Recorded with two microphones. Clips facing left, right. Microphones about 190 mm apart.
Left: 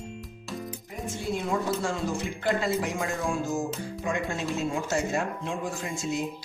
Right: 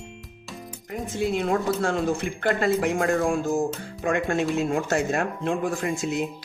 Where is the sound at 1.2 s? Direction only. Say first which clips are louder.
Right 5 dB; 70° right (ahead or behind).